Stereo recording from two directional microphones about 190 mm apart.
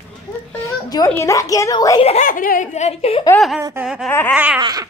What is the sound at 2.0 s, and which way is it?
Speech, 40° left (ahead or behind).